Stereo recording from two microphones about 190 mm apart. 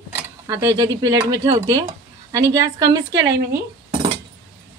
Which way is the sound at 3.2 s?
65° right (ahead or behind).